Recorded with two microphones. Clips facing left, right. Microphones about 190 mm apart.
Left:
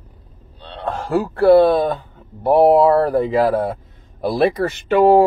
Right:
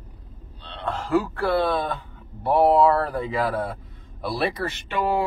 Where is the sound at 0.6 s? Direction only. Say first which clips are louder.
Left 5 dB; 40° left (ahead or behind).